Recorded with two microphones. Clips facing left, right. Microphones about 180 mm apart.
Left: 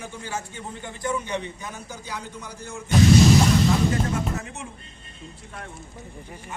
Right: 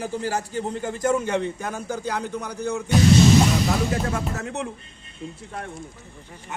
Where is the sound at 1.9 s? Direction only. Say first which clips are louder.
Right 9 dB; 65° right (ahead or behind).